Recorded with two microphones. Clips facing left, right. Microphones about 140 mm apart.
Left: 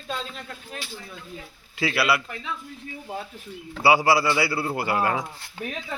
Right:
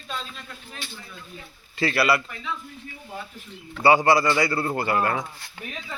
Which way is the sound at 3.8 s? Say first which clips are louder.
Right 1 dB; 5° left (ahead or behind).